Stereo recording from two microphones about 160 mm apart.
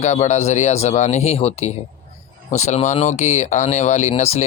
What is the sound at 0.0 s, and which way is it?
Speech, 45° left (ahead or behind).